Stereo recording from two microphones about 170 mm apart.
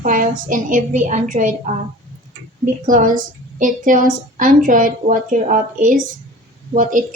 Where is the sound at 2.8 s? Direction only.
50° right (ahead or behind).